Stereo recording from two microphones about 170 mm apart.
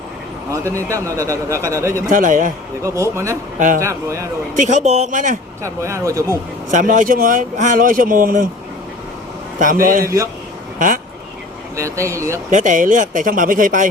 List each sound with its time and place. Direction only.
0.5 s a man's voice: 15° right (ahead or behind)
2.0 s speech: 50° right (ahead or behind)
2.8 s a man's voice: 15° right (ahead or behind)
4.5 s speech: 45° right (ahead or behind)
5.6 s speech: 20° right (ahead or behind)
6.7 s speech: 50° right (ahead or behind)
9.8 s a man's voice: 55° right (ahead or behind)
11.8 s a man's voice: 15° right (ahead or behind)
12.5 s speech: 50° right (ahead or behind)